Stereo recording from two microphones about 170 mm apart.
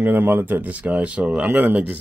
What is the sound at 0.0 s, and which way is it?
Speech, 10° right (ahead or behind).